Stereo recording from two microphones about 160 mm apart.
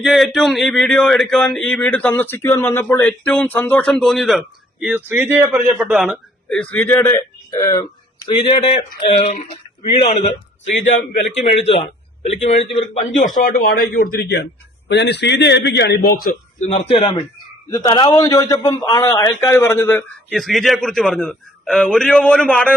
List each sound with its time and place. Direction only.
0.0 s a man's voice: centre (ahead or behind); by 7.6 s 15° left (ahead or behind)
7.6 s a man's voice: 30° left (ahead or behind)
9.1 s speech: 45° left (ahead or behind)
11.3 s a man's voice: 40° left (ahead or behind)
13.1 s a man's voice: 55° left (ahead or behind); by 16.3 s 75° left (ahead or behind)
16.6 s speech: 45° left (ahead or behind)
17.7 s a man's voice: 25° left (ahead or behind)
20.3 s speech: centre (ahead or behind)